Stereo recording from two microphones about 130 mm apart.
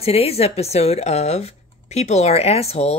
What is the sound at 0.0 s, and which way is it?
Speech, 50° left (ahead or behind).